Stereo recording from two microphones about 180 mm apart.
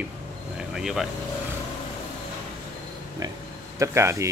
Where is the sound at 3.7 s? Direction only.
15° right (ahead or behind).